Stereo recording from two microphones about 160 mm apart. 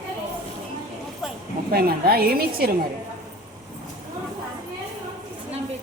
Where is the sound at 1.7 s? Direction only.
70° right (ahead or behind).